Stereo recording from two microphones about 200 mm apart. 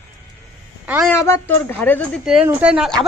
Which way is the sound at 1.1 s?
10° left (ahead or behind).